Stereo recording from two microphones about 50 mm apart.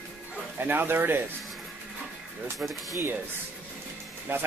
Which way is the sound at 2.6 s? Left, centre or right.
Right.